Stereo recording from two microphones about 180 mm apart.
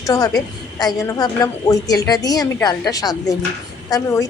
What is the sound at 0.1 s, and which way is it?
A woman's voice, 20° left (ahead or behind).